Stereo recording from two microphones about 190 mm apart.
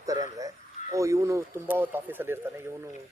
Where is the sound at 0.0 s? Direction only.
20° right (ahead or behind).